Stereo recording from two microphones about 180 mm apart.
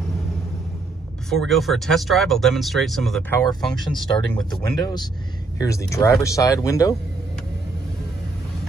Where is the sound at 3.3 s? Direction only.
20° left (ahead or behind).